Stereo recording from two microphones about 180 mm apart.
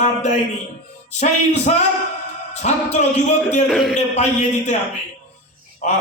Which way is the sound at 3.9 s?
40° left (ahead or behind).